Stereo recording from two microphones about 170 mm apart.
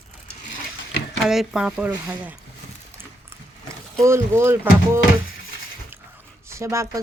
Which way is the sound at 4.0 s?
15° right (ahead or behind).